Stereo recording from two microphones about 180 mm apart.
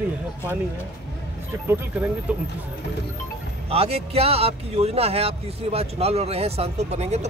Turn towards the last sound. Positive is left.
turn(degrees=-40)  # may be behind; listen again after turning